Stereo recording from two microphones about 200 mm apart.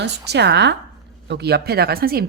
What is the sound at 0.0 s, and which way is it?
Speech, 55° right (ahead or behind).